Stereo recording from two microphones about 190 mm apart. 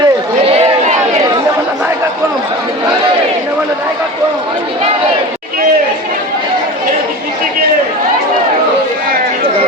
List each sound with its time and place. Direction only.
0.0 s run: 30° right (ahead or behind)